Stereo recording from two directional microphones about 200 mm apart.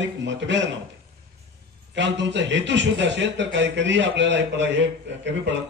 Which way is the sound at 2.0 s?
65° right (ahead or behind).